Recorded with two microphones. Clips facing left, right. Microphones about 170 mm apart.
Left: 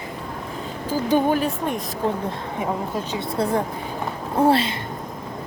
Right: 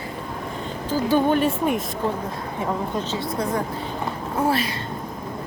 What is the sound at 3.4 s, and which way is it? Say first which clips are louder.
A woman's voice: left 5 dB; 30° left (ahead or behind).